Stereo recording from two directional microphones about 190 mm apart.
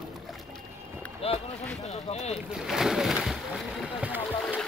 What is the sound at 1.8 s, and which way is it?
Speech, 35° left (ahead or behind).